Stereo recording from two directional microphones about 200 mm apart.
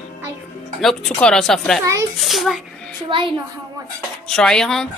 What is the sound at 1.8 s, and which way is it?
Speech, 15° right (ahead or behind).